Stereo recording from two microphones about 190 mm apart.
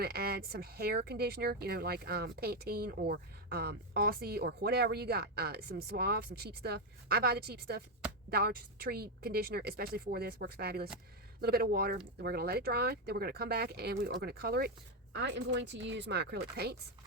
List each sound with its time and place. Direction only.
0.0 s speech: 55° right (ahead or behind)
15.1 s speech: 65° right (ahead or behind)